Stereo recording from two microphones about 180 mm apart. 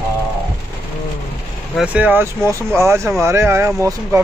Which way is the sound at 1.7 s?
5° right (ahead or behind).